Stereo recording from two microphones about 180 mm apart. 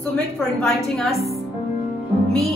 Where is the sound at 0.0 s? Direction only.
5° left (ahead or behind).